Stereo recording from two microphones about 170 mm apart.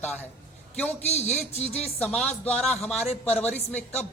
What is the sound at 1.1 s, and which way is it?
Speech, 40° left (ahead or behind).